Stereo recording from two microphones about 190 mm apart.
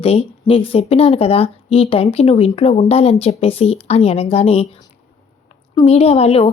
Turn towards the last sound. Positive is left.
turn(degrees=30)  # may be behind; listen again after turning